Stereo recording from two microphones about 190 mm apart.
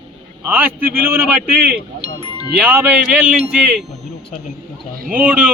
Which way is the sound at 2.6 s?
5° right (ahead or behind).